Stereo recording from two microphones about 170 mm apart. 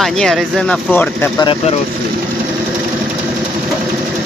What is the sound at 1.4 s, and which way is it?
Speech, 30° left (ahead or behind).